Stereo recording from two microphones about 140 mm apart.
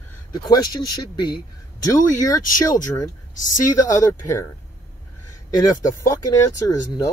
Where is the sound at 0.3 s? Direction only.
30° left (ahead or behind).